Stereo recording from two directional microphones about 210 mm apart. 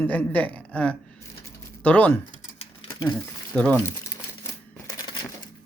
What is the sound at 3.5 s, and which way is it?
Speech, 5° left (ahead or behind).